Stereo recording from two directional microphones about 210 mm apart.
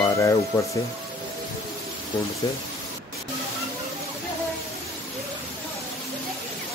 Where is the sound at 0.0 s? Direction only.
15° left (ahead or behind).